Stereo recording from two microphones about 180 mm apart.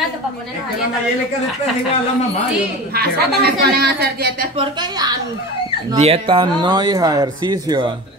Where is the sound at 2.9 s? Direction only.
60° right (ahead or behind).